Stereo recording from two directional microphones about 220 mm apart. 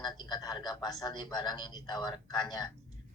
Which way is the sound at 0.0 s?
20° left (ahead or behind).